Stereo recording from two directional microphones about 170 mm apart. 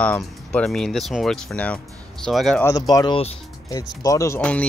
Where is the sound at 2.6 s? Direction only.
20° left (ahead or behind).